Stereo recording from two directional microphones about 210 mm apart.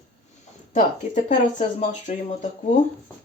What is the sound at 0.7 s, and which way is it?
Speech, 35° left (ahead or behind).